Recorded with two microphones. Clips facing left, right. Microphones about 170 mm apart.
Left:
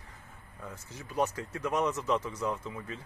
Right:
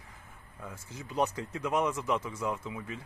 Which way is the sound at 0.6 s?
10° right (ahead or behind).